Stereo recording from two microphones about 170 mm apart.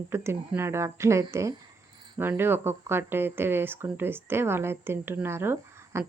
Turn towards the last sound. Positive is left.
turn(degrees=-15)  # may be behind; listen again after turning